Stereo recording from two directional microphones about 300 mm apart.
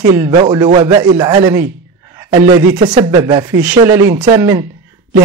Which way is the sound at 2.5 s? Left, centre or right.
Right.